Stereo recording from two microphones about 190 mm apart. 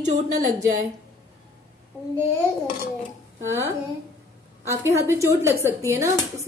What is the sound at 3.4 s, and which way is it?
A woman's voice, 15° right (ahead or behind).